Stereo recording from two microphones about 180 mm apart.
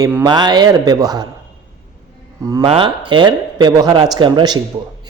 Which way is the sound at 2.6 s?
30° right (ahead or behind).